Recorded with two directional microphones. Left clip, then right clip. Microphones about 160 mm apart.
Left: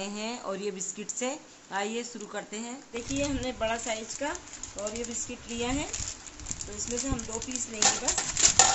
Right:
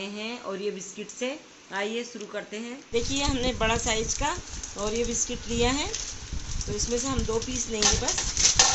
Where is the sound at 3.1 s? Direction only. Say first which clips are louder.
Right 4 dB; 45° right (ahead or behind).